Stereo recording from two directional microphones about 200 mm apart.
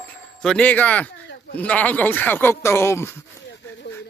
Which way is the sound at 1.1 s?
60° left (ahead or behind).